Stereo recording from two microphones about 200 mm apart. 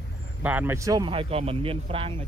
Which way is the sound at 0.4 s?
10° right (ahead or behind).